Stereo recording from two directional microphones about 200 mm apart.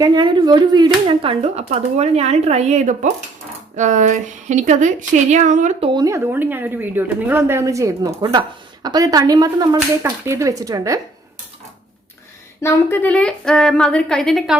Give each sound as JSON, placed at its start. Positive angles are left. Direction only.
{"t": 0.0, "sound": "speech", "side_deg": -20}
{"t": 5.9, "sound": "a woman's voice", "side_deg": -15}
{"t": 12.6, "sound": "a woman's voice", "side_deg": 10}